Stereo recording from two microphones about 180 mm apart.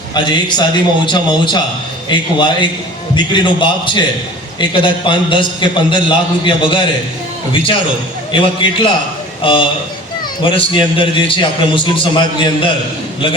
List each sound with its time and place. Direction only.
0.1 s a man's voice: 25° left (ahead or behind)
8.3 s a man's voice: 30° left (ahead or behind)